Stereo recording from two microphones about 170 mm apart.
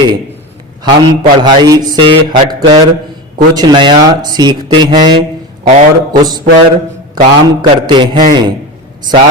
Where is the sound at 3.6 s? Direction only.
25° right (ahead or behind).